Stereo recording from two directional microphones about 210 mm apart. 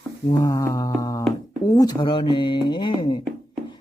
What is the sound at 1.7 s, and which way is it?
Speech, 15° left (ahead or behind).